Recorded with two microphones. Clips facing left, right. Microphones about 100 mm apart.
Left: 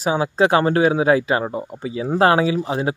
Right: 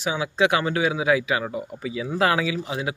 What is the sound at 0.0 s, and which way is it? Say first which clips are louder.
Speech: left 5 dB; 40° left (ahead or behind).